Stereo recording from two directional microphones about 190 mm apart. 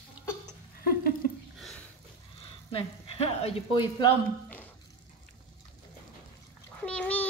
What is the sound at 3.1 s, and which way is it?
A woman's voice, 30° left (ahead or behind).